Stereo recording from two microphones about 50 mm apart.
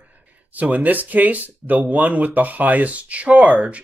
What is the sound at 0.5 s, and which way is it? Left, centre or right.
Speech, right.